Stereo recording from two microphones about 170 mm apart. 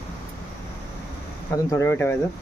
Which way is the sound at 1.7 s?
15° left (ahead or behind).